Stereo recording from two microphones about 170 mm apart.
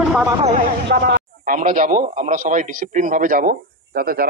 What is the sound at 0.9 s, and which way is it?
A man's voice, 70° right (ahead or behind).